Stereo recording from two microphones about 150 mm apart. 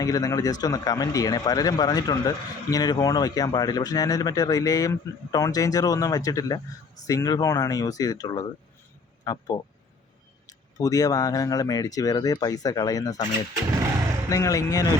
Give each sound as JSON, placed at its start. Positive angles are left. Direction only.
{"t": 0.0, "sound": "a man's voice", "side_deg": 25}
{"t": 14.3, "sound": "a man's voice", "side_deg": 20}